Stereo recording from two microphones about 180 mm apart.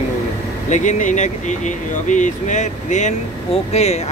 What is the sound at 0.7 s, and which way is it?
Speech, 45° left (ahead or behind).